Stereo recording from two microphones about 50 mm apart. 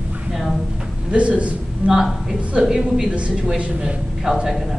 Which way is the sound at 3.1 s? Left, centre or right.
Right.